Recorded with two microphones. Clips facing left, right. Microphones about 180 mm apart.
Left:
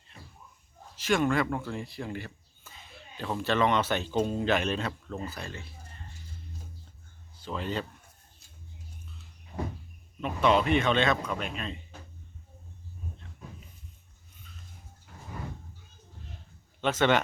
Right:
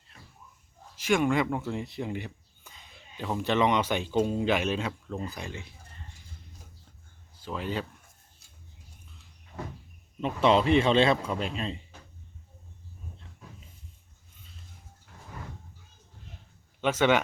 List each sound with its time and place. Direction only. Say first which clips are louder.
0.9 s speech: right 1 dB; 15° right (ahead or behind)
7.4 s speech: even; 10° right (ahead or behind)
10.2 s speech: right 2 dB; 25° right (ahead or behind)
16.8 s speech: right 1 dB; 10° right (ahead or behind)